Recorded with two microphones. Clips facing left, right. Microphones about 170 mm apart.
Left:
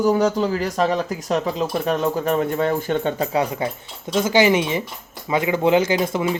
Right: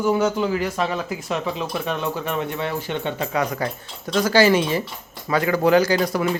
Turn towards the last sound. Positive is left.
turn(degrees=20)  # may be behind; listen again after turning